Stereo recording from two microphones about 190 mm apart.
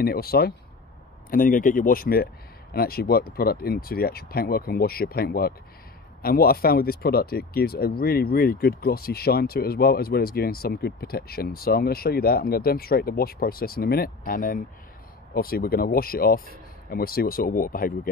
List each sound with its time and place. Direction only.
0.0 s speech: 55° left (ahead or behind)